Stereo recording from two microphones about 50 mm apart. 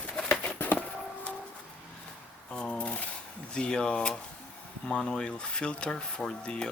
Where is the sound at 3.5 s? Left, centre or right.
Centre.